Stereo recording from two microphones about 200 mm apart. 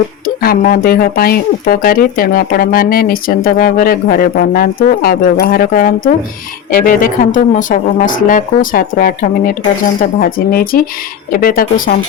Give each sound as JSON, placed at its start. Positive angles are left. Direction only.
{"t": 0.4, "sound": "speech", "side_deg": 45}